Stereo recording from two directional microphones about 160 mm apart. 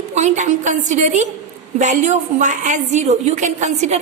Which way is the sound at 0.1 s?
45° right (ahead or behind).